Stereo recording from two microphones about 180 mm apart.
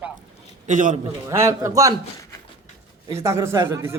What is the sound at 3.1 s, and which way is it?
Speech, 15° right (ahead or behind).